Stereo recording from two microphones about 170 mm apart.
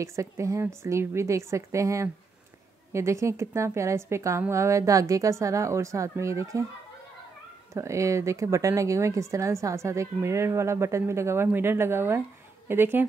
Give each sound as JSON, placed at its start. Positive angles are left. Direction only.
{"t": 0.0, "sound": "speech", "side_deg": -15}
{"t": 7.7, "sound": "speech", "side_deg": -15}